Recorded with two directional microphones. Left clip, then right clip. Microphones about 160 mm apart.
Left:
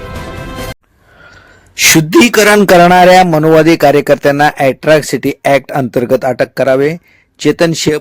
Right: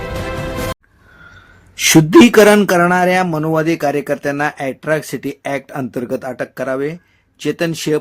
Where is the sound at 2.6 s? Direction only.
45° left (ahead or behind).